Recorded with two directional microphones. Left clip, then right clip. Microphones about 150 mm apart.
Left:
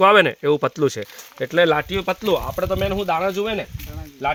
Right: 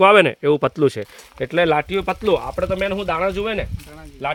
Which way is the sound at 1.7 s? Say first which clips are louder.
Right 1 dB; 65° right (ahead or behind).